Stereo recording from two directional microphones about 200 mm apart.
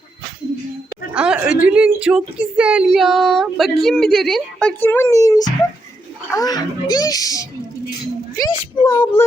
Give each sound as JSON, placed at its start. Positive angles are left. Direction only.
{"t": 1.1, "sound": "a woman's voice", "side_deg": -5}
{"t": 8.4, "sound": "a child's voice", "side_deg": 20}